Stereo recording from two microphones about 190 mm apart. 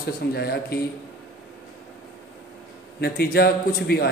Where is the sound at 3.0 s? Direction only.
55° left (ahead or behind).